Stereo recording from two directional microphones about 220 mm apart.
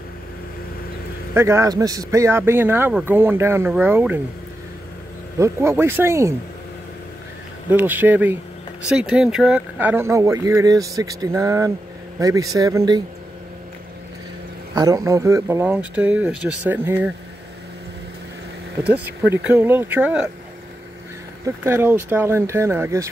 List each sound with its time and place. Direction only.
1.3 s a man's voice: 10° right (ahead or behind)
5.4 s a man's voice: 10° right (ahead or behind)
7.7 s a man's voice: 10° right (ahead or behind)
14.8 s a man's voice: 15° right (ahead or behind)
18.9 s a man's voice: 10° right (ahead or behind)
21.6 s a man's voice: 10° right (ahead or behind)